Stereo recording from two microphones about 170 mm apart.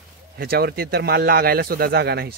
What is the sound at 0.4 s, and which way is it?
A man's voice, 65° right (ahead or behind).